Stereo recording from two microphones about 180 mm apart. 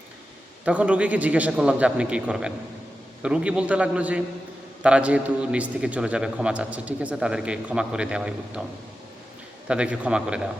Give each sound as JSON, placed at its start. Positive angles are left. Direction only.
{"t": 0.6, "sound": "a man's voice", "side_deg": -5}
{"t": 9.6, "sound": "a man's voice", "side_deg": -5}